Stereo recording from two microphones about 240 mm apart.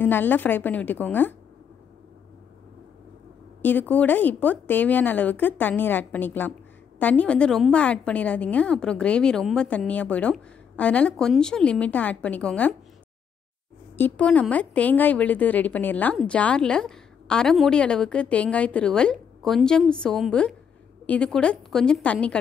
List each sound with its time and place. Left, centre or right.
0.0 s speech: centre
3.6 s a woman's voice: centre
13.9 s a woman's voice: centre